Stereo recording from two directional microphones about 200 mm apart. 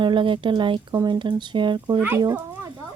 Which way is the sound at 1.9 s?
10° right (ahead or behind).